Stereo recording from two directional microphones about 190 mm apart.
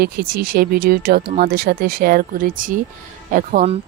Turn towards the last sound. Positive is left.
turn(degrees=-45)  # may be behind; listen again after turning